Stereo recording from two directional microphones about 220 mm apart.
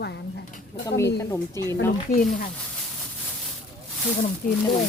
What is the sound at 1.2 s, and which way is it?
Speech, 15° left (ahead or behind).